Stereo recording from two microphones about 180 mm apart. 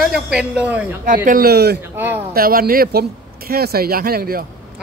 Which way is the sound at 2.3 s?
55° right (ahead or behind).